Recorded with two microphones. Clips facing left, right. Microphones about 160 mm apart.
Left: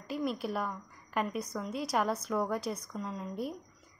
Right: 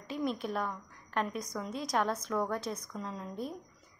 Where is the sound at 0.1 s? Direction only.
5° left (ahead or behind).